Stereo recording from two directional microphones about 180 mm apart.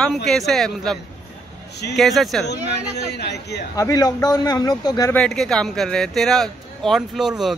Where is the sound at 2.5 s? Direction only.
65° left (ahead or behind).